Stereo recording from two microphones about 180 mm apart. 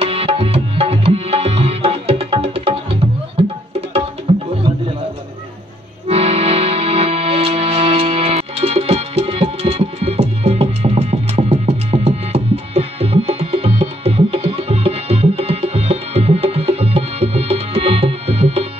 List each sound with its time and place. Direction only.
0.0 s tabla: 30° right (ahead or behind)
6.0 s music: 35° right (ahead or behind)